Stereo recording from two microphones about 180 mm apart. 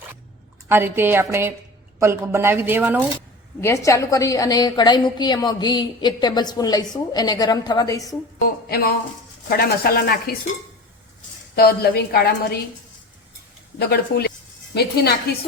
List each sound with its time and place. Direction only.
0.7 s speech: 10° right (ahead or behind)
3.6 s a woman's voice: 15° left (ahead or behind)
9.5 s a woman's voice: 55° left (ahead or behind)
11.5 s a woman's voice: 60° left (ahead or behind)
13.7 s a woman's voice: 60° left (ahead or behind)